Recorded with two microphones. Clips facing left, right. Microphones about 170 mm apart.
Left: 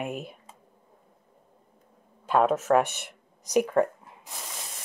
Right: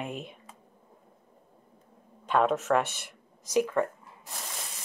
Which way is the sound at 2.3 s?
5° left (ahead or behind).